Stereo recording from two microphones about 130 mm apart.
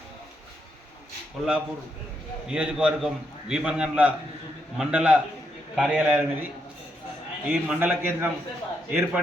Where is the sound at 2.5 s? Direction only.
5° right (ahead or behind).